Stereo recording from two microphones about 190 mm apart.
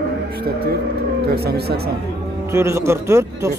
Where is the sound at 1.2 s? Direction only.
55° right (ahead or behind).